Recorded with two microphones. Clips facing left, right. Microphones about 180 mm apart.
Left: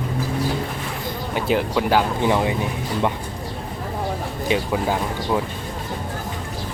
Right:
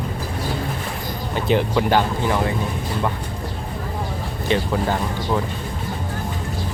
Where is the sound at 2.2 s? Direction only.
20° left (ahead or behind).